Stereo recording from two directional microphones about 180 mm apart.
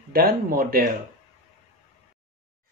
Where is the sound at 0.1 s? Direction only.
55° right (ahead or behind).